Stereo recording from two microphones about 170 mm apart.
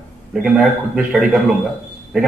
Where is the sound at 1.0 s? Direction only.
5° right (ahead or behind).